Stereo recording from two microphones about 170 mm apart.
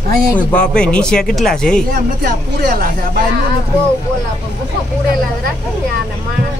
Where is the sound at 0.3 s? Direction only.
10° left (ahead or behind).